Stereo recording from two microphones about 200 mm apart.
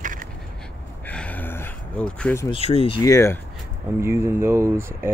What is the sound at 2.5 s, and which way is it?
Speech, 30° left (ahead or behind).